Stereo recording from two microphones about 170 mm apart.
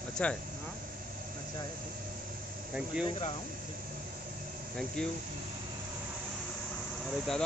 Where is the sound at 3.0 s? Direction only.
30° left (ahead or behind).